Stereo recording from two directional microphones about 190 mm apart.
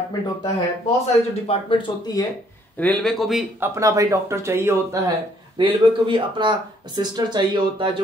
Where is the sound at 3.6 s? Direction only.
15° right (ahead or behind).